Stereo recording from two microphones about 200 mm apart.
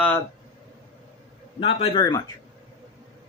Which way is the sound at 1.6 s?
30° left (ahead or behind).